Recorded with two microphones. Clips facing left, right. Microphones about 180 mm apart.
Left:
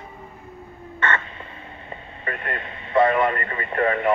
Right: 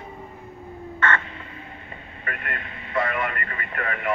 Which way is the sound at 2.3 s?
30° left (ahead or behind).